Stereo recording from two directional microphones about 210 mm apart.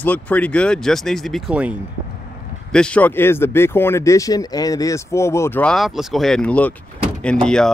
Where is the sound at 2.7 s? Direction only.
5° left (ahead or behind).